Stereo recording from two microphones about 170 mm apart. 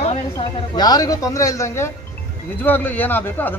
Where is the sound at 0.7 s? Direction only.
20° left (ahead or behind).